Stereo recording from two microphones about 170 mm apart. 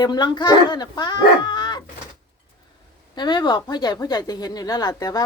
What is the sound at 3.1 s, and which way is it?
Speech, 25° left (ahead or behind).